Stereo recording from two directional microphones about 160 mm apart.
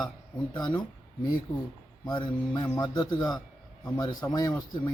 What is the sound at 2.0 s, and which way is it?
A man's voice, 30° left (ahead or behind).